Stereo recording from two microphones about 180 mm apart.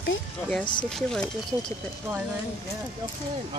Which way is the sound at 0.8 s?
5° left (ahead or behind).